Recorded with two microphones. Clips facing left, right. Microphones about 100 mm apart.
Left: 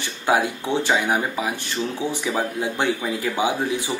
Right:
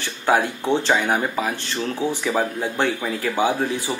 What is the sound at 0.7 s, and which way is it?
Speech, 15° left (ahead or behind).